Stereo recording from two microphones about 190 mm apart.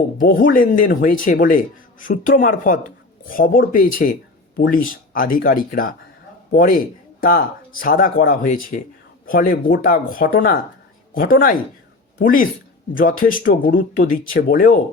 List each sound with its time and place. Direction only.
0.2 s speech: 45° left (ahead or behind)